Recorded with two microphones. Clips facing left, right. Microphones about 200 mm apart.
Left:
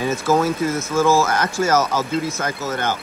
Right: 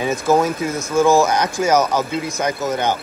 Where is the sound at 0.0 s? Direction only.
15° right (ahead or behind).